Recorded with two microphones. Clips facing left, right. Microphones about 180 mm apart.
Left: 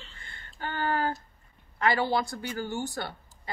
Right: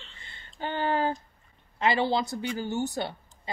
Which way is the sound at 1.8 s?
20° right (ahead or behind).